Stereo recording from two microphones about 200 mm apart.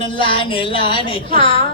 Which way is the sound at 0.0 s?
25° left (ahead or behind).